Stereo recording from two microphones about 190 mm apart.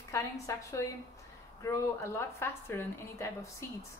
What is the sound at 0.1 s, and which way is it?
A woman's voice, 15° left (ahead or behind).